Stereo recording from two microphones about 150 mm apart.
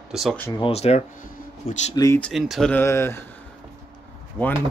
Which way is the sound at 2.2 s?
Centre (ahead or behind).